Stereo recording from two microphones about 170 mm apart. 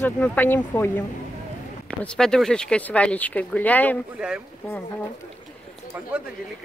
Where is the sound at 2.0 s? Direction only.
5° left (ahead or behind).